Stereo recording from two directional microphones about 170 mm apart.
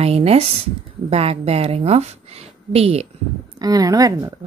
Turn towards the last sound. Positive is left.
turn(degrees=-20)  # may be behind; listen again after turning